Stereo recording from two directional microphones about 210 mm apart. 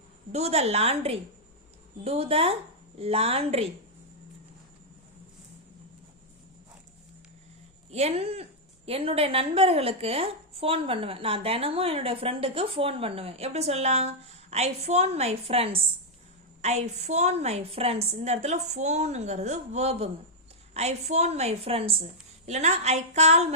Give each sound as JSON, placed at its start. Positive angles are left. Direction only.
{"t": 0.3, "sound": "a woman's voice", "side_deg": -30}
{"t": 7.9, "sound": "a woman's voice", "side_deg": -30}